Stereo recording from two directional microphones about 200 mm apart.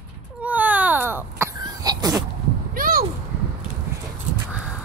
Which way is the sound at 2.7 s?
45° right (ahead or behind).